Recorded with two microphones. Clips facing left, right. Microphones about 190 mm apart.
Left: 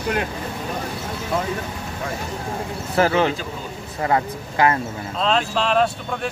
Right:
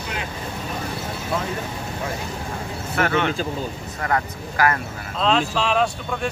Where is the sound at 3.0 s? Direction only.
30° left (ahead or behind).